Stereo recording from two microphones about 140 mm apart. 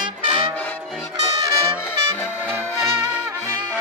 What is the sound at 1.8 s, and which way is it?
Music, 15° left (ahead or behind).